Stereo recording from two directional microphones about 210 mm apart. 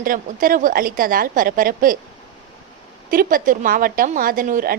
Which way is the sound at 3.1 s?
40° right (ahead or behind).